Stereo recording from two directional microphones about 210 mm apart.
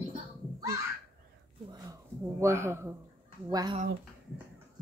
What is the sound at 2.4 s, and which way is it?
Speech, 15° right (ahead or behind).